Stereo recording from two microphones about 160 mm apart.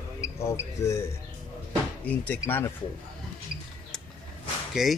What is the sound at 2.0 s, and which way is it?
Speech, 10° left (ahead or behind).